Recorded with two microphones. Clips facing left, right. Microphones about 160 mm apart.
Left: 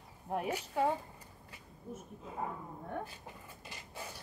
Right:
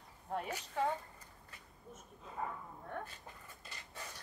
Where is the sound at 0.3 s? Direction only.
10° left (ahead or behind).